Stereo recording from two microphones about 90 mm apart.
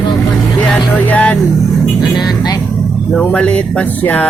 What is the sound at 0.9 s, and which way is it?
Music, 15° left (ahead or behind).